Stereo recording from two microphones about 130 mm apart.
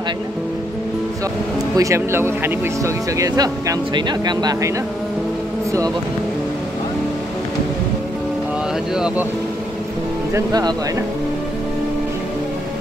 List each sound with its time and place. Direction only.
1.8 s speech: 20° right (ahead or behind)
8.9 s speech: 5° right (ahead or behind)
10.3 s speech: 25° right (ahead or behind)